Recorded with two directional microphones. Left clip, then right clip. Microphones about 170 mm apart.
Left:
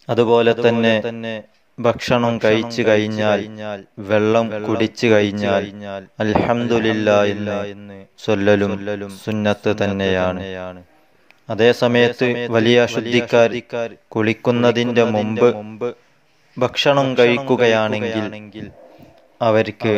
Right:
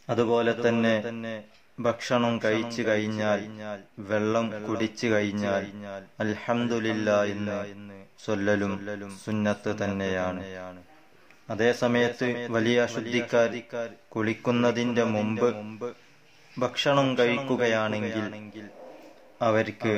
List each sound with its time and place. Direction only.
0.0 s a man's voice: 45° left (ahead or behind)